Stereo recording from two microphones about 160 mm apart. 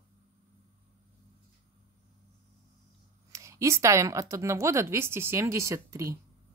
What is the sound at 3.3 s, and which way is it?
Speech, 20° right (ahead or behind).